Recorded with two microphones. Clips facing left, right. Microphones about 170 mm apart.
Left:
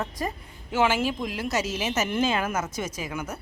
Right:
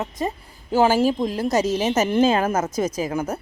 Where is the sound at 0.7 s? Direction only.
35° right (ahead or behind).